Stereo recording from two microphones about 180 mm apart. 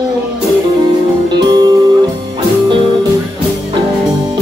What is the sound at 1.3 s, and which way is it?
Music, 25° right (ahead or behind).